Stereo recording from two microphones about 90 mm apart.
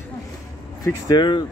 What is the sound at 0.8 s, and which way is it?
Speech, 50° left (ahead or behind).